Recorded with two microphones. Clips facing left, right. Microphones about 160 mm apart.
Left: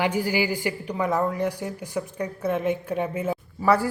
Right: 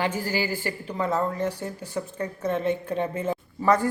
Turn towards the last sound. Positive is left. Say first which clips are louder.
# left 1 dB
turn(degrees=10)  # may be behind; listen again after turning